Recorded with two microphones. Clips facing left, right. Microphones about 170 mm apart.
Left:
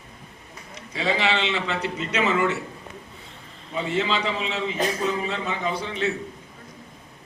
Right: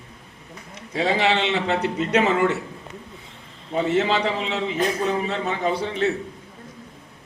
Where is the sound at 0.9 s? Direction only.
55° right (ahead or behind).